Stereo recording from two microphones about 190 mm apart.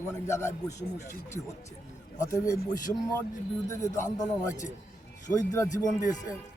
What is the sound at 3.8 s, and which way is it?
Speech, 40° left (ahead or behind).